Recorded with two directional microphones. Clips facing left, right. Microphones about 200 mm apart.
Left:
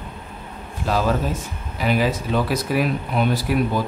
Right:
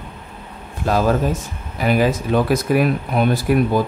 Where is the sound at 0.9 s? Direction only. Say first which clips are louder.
Right 4 dB; 50° right (ahead or behind).